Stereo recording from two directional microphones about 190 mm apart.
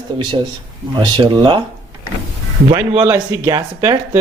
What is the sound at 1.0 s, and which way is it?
Speech, 25° right (ahead or behind).